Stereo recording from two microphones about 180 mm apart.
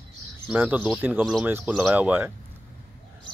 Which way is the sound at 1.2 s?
Centre (ahead or behind).